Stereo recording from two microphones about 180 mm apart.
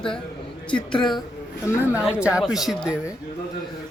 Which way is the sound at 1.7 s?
15° left (ahead or behind).